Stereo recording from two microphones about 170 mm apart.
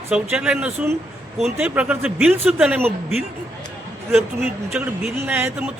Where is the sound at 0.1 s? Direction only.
5° right (ahead or behind).